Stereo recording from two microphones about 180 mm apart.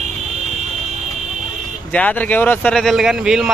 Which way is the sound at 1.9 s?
10° left (ahead or behind).